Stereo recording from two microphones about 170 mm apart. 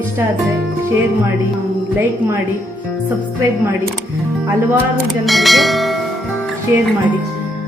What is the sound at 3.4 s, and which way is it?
Speech, 15° right (ahead or behind).